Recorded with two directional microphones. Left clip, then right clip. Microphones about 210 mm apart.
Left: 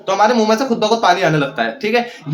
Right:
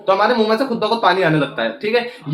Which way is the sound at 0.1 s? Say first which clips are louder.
Left 1 dB; 10° left (ahead or behind).